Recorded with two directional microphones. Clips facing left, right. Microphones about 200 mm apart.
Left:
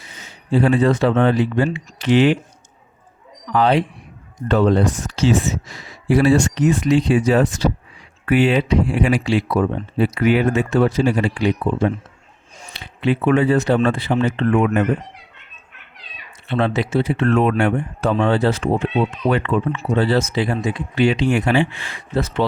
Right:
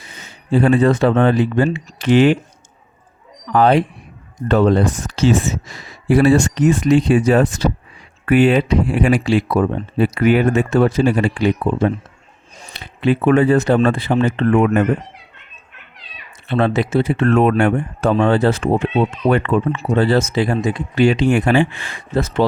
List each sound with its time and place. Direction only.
0.5 s speech: 50° right (ahead or behind)
3.5 s speech: 50° right (ahead or behind)
16.5 s speech: 45° right (ahead or behind)